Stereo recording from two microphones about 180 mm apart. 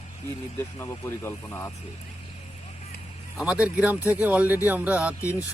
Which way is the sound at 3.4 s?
5° right (ahead or behind).